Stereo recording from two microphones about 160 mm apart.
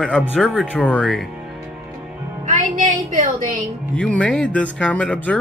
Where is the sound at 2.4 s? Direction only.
50° right (ahead or behind).